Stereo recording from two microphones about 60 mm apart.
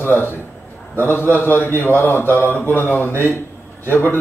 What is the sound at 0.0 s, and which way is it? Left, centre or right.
A man's voice, left.